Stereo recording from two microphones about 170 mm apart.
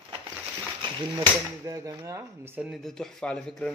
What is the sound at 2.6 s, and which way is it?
Speech, centre (ahead or behind).